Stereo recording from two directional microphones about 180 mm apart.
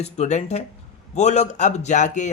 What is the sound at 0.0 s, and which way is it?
Speech, 40° left (ahead or behind).